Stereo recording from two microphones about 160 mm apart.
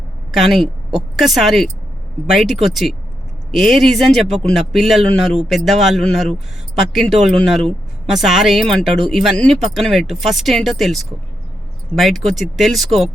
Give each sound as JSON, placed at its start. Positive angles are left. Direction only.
{"t": 0.3, "sound": "speech", "side_deg": 0}